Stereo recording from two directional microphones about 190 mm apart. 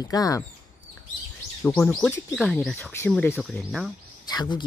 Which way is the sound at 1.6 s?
5° left (ahead or behind).